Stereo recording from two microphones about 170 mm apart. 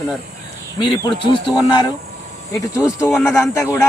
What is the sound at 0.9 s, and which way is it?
Speech, 25° left (ahead or behind).